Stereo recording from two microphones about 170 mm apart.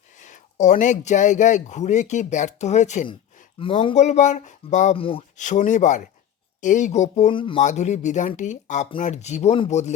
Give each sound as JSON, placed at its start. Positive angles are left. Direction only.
{"t": 0.2, "sound": "speech", "side_deg": 50}
{"t": 3.6, "sound": "speech", "side_deg": 30}
{"t": 4.9, "sound": "speech", "side_deg": 35}
{"t": 5.4, "sound": "speech", "side_deg": 45}
{"t": 7.3, "sound": "speech", "side_deg": 30}
{"t": 7.6, "sound": "speech", "side_deg": 45}